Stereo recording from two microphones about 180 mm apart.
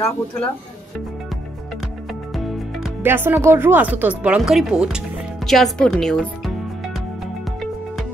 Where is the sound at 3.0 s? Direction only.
10° right (ahead or behind).